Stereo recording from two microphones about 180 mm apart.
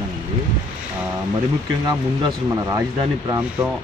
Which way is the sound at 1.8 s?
20° right (ahead or behind).